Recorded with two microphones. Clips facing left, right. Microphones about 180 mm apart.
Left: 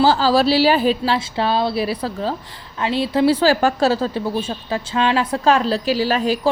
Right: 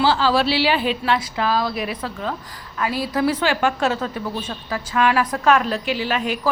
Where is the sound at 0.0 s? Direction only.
40° left (ahead or behind).